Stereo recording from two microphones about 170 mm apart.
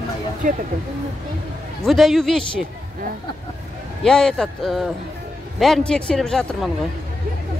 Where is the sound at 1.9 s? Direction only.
Centre (ahead or behind).